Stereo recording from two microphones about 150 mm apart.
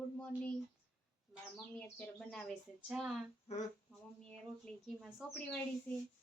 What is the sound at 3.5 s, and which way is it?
Speech, 45° left (ahead or behind).